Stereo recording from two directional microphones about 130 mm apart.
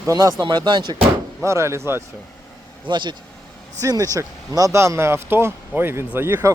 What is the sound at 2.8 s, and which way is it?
Speech, 35° right (ahead or behind).